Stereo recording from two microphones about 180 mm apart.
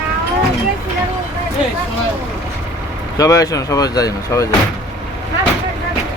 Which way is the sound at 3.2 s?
15° left (ahead or behind).